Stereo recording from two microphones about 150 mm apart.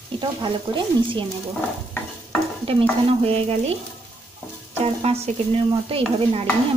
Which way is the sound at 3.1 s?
40° right (ahead or behind).